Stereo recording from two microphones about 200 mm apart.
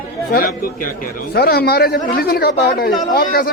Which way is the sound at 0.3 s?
45° left (ahead or behind).